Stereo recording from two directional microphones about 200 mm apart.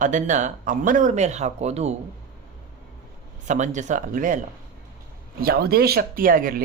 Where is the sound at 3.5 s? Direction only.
35° right (ahead or behind).